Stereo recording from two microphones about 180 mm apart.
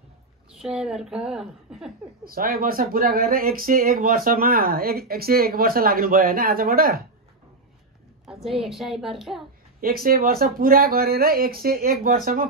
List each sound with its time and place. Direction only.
0.5 s a woman's voice: 5° right (ahead or behind)
2.2 s speech: 55° right (ahead or behind)
8.3 s a sound: centre (ahead or behind)
8.6 s a woman's voice: centre (ahead or behind)
9.8 s speech: 55° right (ahead or behind)